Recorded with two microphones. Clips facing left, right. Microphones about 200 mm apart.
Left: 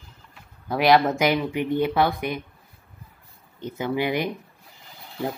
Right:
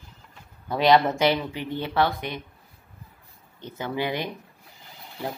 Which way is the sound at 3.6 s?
15° left (ahead or behind).